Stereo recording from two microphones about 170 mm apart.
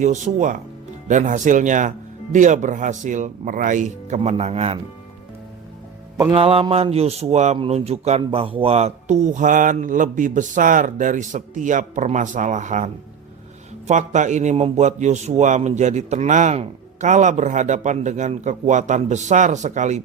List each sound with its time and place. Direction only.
0.0 s a man's voice: 45° right (ahead or behind)
6.3 s a man's voice: 35° right (ahead or behind)